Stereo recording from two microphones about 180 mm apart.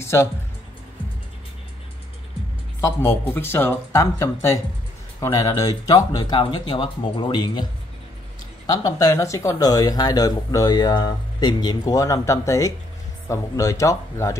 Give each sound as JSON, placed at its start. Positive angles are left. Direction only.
{"t": 0.0, "sound": "speech", "side_deg": 15}
{"t": 2.8, "sound": "speech", "side_deg": 15}
{"t": 8.6, "sound": "speech", "side_deg": 20}